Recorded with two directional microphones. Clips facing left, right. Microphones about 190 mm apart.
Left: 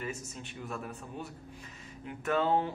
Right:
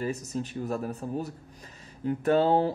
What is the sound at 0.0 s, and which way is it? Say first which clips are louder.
Speech: right 9 dB; 35° right (ahead or behind).